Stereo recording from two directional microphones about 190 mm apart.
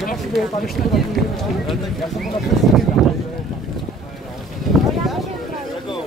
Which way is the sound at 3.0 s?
Centre (ahead or behind).